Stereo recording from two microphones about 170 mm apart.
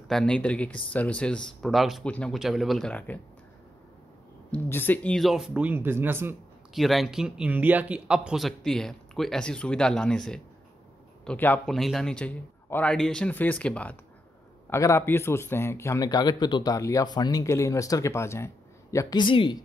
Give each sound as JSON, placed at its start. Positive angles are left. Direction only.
{"t": 0.1, "sound": "speech", "side_deg": 5}
{"t": 4.5, "sound": "speech", "side_deg": 10}
{"t": 6.7, "sound": "a man's voice", "side_deg": 0}